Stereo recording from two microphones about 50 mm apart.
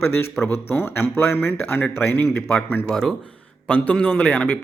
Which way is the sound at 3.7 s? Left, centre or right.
Left.